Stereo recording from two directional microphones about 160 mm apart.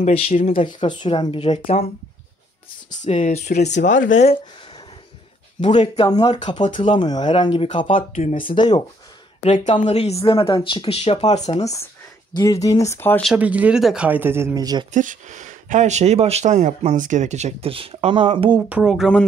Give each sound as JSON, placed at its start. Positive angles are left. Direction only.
{"t": 0.0, "sound": "speech", "side_deg": 45}
{"t": 0.5, "sound": "speech", "side_deg": 30}
{"t": 2.9, "sound": "speech", "side_deg": 50}
{"t": 5.7, "sound": "speech", "side_deg": 30}
{"t": 7.9, "sound": "speech", "side_deg": 50}
{"t": 9.4, "sound": "speech", "side_deg": 45}
{"t": 10.2, "sound": "speech", "side_deg": 30}
{"t": 12.6, "sound": "speech", "side_deg": 20}
{"t": 13.2, "sound": "speech", "side_deg": -5}
{"t": 14.9, "sound": "speech", "side_deg": -50}
{"t": 18.7, "sound": "speech", "side_deg": -5}